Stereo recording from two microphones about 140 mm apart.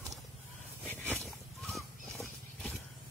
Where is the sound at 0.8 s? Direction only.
10° left (ahead or behind).